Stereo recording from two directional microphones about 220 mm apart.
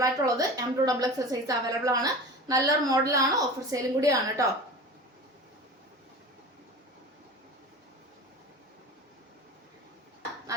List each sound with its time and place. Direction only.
0.0 s a woman's voice: 15° right (ahead or behind)